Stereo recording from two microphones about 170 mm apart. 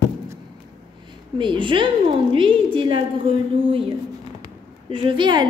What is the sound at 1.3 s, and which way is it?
A woman's voice, 30° right (ahead or behind).